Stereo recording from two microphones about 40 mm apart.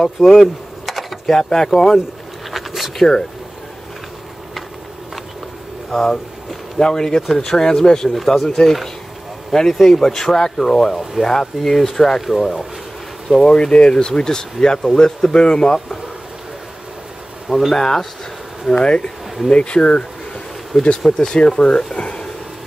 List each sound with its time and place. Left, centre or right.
0.0 s speech: centre
2.5 s a sound: centre
5.9 s speech: centre
13.4 s speech: centre
17.5 s speech: centre
17.7 s speech: centre
18.8 s speech: left
21.9 s speech: left